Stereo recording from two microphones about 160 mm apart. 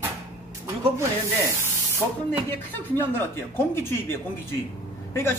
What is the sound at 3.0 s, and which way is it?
A man's voice, 15° left (ahead or behind).